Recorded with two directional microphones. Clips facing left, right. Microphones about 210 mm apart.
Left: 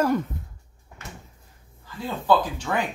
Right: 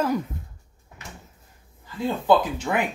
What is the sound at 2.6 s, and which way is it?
Speech, 15° right (ahead or behind).